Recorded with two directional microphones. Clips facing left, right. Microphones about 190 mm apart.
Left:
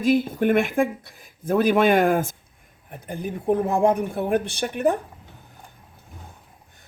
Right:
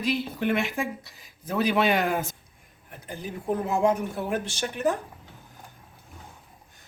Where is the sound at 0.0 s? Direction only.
50° left (ahead or behind).